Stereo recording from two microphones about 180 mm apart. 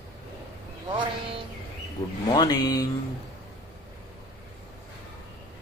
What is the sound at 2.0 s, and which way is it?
Speech, 20° left (ahead or behind).